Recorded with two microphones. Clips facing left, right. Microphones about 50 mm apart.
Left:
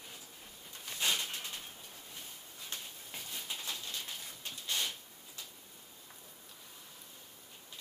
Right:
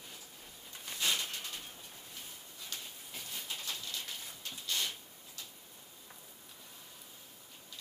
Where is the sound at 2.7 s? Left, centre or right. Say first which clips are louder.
Left 1 dB; left.